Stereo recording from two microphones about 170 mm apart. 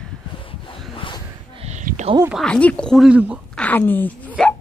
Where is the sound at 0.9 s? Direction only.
30° left (ahead or behind).